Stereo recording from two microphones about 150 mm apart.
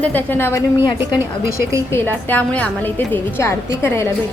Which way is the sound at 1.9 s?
15° left (ahead or behind).